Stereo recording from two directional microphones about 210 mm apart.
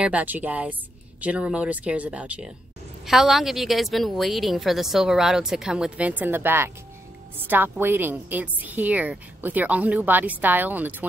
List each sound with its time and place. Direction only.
0.0 s a woman's voice: 5° right (ahead or behind)